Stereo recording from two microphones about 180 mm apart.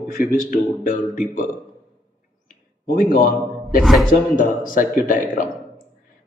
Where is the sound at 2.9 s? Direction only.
50° left (ahead or behind).